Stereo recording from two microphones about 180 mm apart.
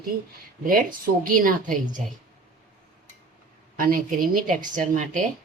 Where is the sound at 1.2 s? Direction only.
50° right (ahead or behind).